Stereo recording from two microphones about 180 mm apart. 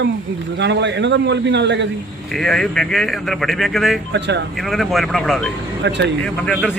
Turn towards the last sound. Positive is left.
turn(degrees=0)  # may be behind; listen again after turning